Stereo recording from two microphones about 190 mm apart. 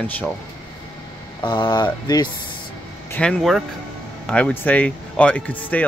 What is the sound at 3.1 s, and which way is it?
Speech, 5° left (ahead or behind).